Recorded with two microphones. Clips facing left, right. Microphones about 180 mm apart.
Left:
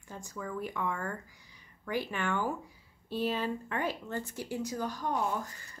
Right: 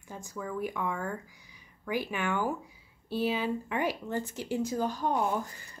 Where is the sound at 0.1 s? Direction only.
5° right (ahead or behind).